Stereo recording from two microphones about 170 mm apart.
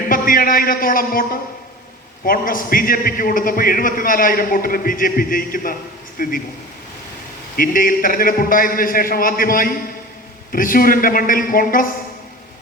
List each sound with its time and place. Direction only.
0.1 s a man's voice: 55° left (ahead or behind)
7.5 s a man's voice: 55° left (ahead or behind)